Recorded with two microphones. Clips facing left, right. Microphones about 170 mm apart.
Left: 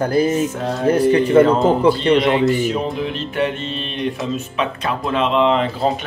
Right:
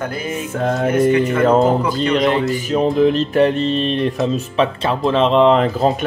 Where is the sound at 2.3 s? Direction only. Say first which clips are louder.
Left 1 dB; 40° right (ahead or behind).